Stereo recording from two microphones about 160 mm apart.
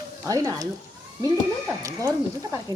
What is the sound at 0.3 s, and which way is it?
Speech, 20° right (ahead or behind).